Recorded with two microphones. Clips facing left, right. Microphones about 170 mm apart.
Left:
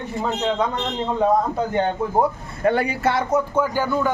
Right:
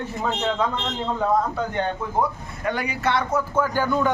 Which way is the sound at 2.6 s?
30° left (ahead or behind).